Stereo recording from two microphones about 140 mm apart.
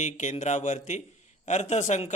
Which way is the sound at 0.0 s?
55° left (ahead or behind).